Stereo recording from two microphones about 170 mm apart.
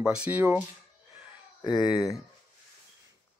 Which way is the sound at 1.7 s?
25° left (ahead or behind).